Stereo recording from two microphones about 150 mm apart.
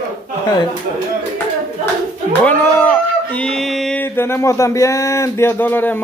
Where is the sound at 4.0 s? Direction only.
15° left (ahead or behind).